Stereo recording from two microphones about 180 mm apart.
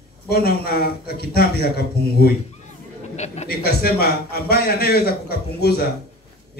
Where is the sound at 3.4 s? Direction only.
60° left (ahead or behind).